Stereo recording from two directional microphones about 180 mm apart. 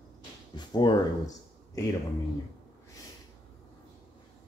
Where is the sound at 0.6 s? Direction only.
25° left (ahead or behind).